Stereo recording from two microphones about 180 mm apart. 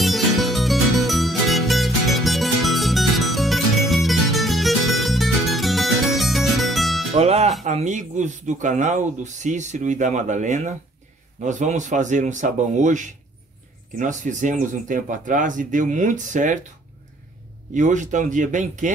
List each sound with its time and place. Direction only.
0.0 s music: centre (ahead or behind)
7.2 s music: 35° right (ahead or behind)
7.6 s speech: 40° right (ahead or behind)
17.7 s speech: 45° right (ahead or behind)